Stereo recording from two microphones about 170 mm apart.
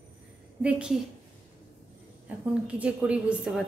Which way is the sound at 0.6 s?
5° right (ahead or behind).